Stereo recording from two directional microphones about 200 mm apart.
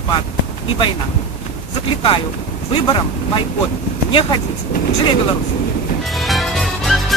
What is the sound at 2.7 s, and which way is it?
Speech, 25° left (ahead or behind).